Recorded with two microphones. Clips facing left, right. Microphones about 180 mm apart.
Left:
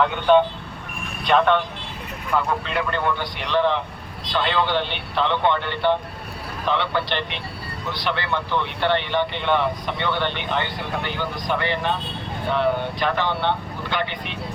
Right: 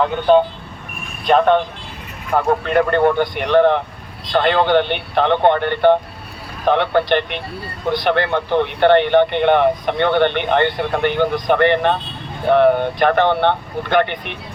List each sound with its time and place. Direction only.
0.0 s speech: 40° right (ahead or behind); by 14.3 s 55° right (ahead or behind)